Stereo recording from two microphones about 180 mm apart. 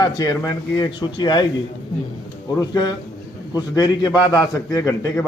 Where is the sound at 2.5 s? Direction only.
25° left (ahead or behind).